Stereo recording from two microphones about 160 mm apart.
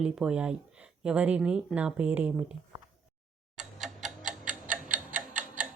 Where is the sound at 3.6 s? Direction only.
Centre (ahead or behind).